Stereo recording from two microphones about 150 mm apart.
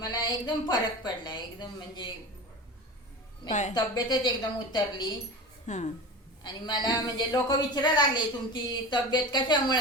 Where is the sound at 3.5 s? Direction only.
55° left (ahead or behind).